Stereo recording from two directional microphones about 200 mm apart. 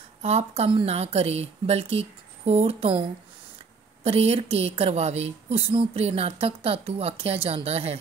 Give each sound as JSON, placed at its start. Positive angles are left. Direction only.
{"t": 0.2, "sound": "a woman's voice", "side_deg": -30}